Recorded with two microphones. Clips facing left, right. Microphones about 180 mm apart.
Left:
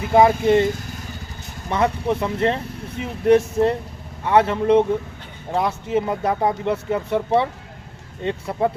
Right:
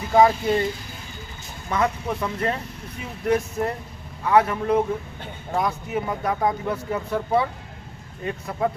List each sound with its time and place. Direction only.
0.1 s speech: 25° left (ahead or behind)
1.7 s speech: 25° left (ahead or behind)
8.2 s speech: 30° left (ahead or behind)